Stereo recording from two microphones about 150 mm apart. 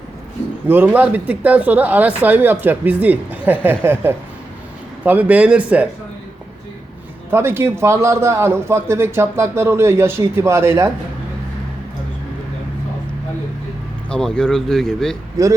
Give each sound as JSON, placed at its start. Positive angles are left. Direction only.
{"t": 0.7, "sound": "a man's voice", "side_deg": -10}
{"t": 5.0, "sound": "a man's voice", "side_deg": -10}
{"t": 7.3, "sound": "a man's voice", "side_deg": -15}
{"t": 14.1, "sound": "speech", "side_deg": 5}